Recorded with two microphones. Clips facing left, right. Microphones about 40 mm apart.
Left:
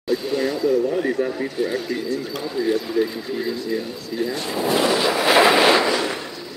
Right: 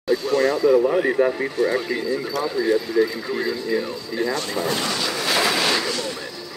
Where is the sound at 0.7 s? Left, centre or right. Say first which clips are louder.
Right 2 dB; right.